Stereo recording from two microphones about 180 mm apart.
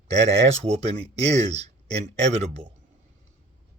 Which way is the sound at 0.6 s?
35° right (ahead or behind).